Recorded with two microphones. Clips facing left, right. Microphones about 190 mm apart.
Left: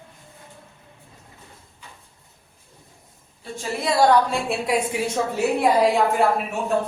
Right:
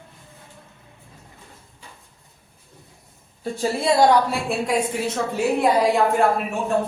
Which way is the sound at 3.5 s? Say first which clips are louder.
Right 3 dB; 35° right (ahead or behind).